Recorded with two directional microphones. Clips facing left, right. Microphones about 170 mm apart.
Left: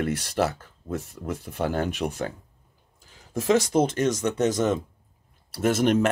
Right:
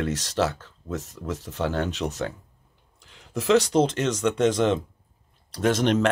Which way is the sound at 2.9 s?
90° right.